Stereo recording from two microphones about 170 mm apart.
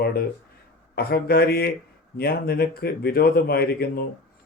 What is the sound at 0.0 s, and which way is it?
Speech, 65° left (ahead or behind).